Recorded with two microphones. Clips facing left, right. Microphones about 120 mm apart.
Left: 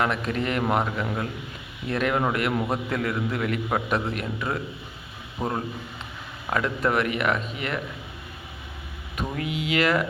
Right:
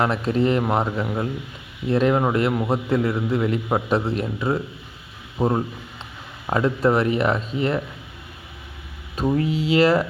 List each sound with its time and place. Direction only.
0.0 s a man's voice: 30° right (ahead or behind)
1.0 s a man's voice: 15° right (ahead or behind)
9.3 s speech: 35° right (ahead or behind)